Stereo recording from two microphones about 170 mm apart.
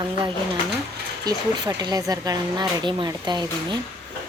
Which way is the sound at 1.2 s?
25° right (ahead or behind).